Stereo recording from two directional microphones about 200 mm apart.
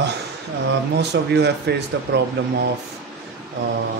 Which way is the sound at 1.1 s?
55° right (ahead or behind).